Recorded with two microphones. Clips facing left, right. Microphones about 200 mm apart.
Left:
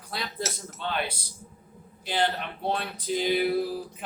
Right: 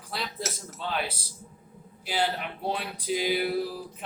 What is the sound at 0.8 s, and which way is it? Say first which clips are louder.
Speech: left 1 dB; 5° right (ahead or behind).